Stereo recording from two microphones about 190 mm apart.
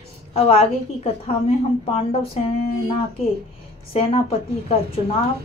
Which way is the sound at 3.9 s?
30° left (ahead or behind).